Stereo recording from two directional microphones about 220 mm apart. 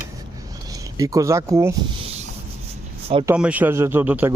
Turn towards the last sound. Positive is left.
turn(degrees=-10)  # may be behind; listen again after turning